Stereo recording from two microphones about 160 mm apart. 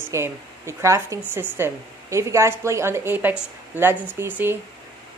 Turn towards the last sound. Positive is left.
turn(degrees=-15)  # may be behind; listen again after turning